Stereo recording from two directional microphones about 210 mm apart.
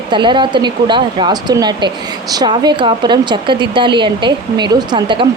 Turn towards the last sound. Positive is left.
turn(degrees=-20)  # may be behind; listen again after turning